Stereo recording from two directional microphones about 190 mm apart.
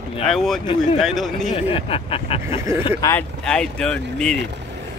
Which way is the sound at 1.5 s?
30° left (ahead or behind).